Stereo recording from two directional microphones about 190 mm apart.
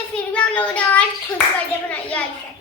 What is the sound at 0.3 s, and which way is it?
Child singing, 5° left (ahead or behind).